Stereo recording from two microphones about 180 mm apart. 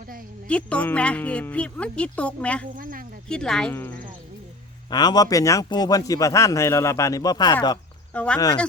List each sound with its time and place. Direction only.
0.4 s speech: 5° left (ahead or behind)
2.7 s speech: 50° right (ahead or behind)
3.2 s speech: 5° left (ahead or behind)
4.9 s a man's voice: 20° left (ahead or behind)
8.1 s speech: 10° left (ahead or behind)